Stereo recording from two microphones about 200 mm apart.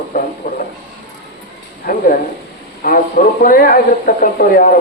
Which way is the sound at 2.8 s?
45° left (ahead or behind).